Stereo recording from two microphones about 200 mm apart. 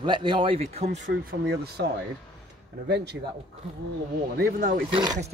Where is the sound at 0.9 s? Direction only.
60° right (ahead or behind).